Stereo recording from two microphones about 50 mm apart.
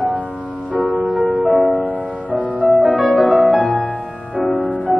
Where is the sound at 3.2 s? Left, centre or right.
Centre.